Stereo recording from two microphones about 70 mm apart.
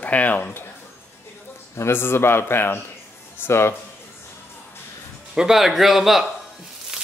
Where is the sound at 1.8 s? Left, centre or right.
Left.